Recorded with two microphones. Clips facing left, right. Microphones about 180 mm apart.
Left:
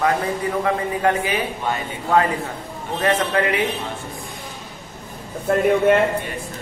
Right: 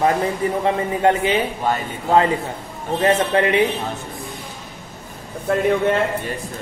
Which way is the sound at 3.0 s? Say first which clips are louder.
Right 3 dB; 25° right (ahead or behind).